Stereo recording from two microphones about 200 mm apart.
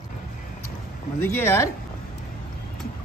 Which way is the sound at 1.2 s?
10° left (ahead or behind).